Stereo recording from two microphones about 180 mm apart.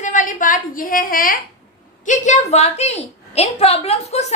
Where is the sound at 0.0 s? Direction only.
45° left (ahead or behind).